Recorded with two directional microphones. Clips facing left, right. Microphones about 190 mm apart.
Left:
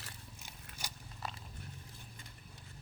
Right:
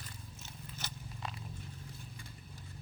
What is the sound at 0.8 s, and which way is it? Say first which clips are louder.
Biting: even; 10° left (ahead or behind).